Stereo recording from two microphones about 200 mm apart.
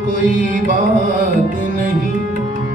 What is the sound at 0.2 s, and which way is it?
Mantra, 40° right (ahead or behind).